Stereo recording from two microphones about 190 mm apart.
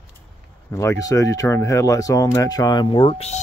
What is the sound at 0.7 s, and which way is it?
Speech, 15° left (ahead or behind).